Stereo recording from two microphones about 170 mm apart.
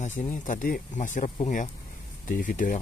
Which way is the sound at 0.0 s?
45° left (ahead or behind).